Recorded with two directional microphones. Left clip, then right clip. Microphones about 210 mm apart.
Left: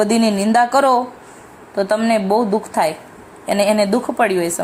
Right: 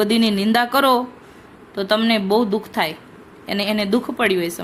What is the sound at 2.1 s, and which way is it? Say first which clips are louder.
A woman's voice: left 3 dB; centre (ahead or behind).